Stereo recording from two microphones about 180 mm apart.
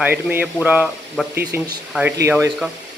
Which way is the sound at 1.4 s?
60° right (ahead or behind).